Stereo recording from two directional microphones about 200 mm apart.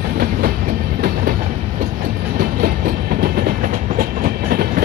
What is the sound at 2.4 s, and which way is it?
Train, 45° right (ahead or behind).